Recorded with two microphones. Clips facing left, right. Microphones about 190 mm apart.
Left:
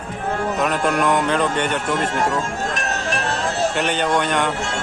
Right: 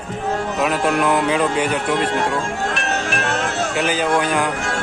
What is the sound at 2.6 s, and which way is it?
Music, 40° left (ahead or behind).